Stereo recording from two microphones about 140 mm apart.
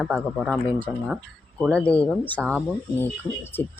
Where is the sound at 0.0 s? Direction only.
Centre (ahead or behind).